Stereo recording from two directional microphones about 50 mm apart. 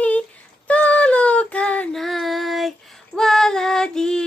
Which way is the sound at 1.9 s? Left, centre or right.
Centre.